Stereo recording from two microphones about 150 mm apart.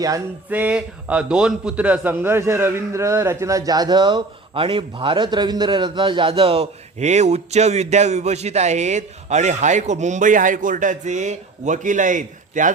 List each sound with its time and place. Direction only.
0.5 s a man's voice: 10° right (ahead or behind); by 12.7 s 60° right (ahead or behind)